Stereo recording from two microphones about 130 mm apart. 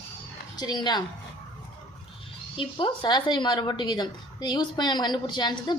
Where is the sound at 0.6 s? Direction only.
35° left (ahead or behind).